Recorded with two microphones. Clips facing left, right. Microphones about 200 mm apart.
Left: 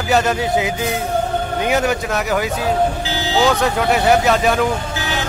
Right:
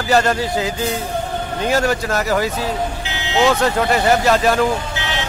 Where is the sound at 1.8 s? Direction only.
Centre (ahead or behind).